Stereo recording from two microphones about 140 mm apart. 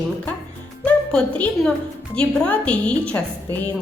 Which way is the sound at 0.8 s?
10° left (ahead or behind).